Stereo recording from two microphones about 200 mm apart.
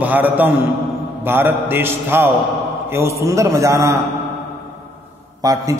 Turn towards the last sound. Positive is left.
turn(degrees=-20)  # may be behind; listen again after turning